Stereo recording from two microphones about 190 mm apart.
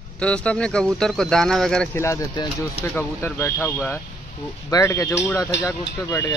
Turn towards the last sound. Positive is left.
turn(degrees=15)  # may be behind; listen again after turning